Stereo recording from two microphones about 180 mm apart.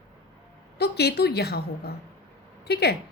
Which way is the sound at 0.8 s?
65° left (ahead or behind).